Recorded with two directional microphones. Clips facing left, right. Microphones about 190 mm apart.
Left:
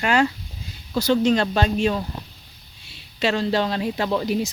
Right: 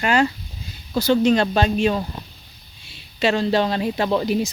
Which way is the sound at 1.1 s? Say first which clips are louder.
Right 2 dB; 10° right (ahead or behind).